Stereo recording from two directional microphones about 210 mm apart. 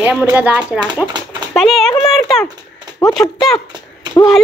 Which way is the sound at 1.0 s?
20° right (ahead or behind).